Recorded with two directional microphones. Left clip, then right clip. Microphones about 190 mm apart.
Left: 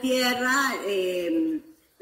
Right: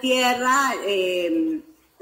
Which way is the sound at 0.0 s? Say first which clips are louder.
Right 4 dB; 30° left (ahead or behind).